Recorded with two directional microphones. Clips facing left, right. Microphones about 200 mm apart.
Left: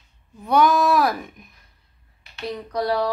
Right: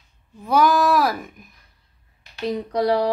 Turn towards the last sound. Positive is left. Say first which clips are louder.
# right 3 dB
turn(degrees=-20)  # may be behind; listen again after turning